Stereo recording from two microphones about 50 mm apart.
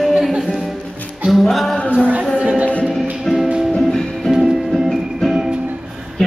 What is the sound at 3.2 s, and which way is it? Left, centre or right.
Music, centre.